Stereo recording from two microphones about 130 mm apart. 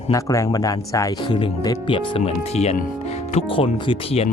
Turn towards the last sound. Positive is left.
turn(degrees=45)  # may be behind; listen again after turning